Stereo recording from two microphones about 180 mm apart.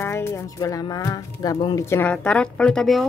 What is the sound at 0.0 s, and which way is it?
Speech, 15° left (ahead or behind).